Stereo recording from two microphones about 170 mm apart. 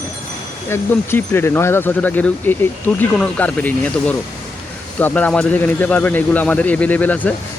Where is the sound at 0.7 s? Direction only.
15° left (ahead or behind).